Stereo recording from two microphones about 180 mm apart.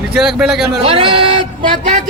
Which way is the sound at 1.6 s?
45° right (ahead or behind).